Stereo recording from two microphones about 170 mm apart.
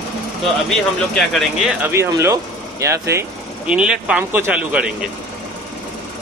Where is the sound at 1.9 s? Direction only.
15° right (ahead or behind).